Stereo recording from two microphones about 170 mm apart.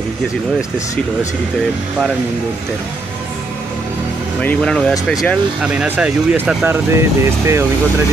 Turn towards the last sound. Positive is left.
turn(degrees=-15)  # may be behind; listen again after turning